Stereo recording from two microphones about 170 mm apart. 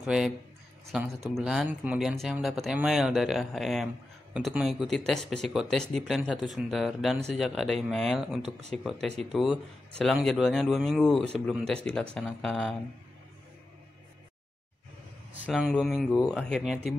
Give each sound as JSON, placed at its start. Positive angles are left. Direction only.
{"t": 0.0, "sound": "speech", "side_deg": -5}
{"t": 15.4, "sound": "speech", "side_deg": -5}